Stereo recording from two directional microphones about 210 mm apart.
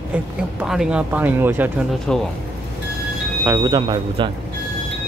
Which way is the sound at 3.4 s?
20° right (ahead or behind).